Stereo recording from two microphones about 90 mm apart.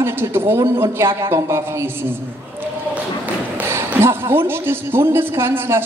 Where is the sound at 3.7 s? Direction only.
30° right (ahead or behind).